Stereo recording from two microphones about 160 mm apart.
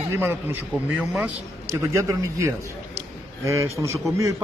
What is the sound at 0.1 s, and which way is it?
A man's voice, 15° right (ahead or behind).